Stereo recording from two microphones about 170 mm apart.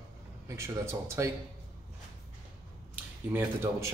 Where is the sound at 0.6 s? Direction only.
15° right (ahead or behind).